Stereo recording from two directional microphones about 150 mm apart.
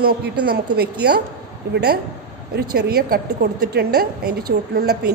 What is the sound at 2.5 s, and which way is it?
A woman's voice, 90° right.